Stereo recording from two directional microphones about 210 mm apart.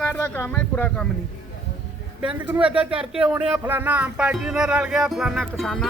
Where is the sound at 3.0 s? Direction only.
5° right (ahead or behind).